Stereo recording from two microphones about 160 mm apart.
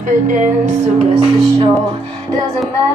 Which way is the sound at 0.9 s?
35° right (ahead or behind).